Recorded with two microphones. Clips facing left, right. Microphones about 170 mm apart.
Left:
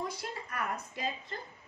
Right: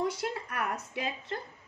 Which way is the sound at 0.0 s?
70° right (ahead or behind).